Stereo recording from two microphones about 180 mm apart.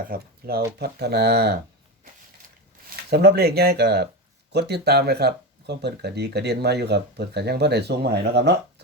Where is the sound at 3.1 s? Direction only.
65° right (ahead or behind).